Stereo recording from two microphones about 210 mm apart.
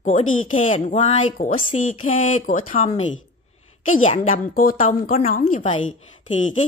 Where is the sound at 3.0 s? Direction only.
65° left (ahead or behind).